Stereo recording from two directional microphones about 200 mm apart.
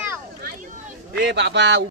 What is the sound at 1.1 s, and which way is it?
Speech, 60° right (ahead or behind).